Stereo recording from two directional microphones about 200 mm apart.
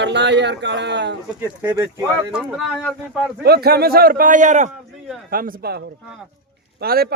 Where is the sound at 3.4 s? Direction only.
50° right (ahead or behind).